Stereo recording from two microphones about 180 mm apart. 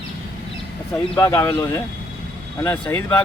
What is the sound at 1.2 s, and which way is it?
Speech, 10° left (ahead or behind).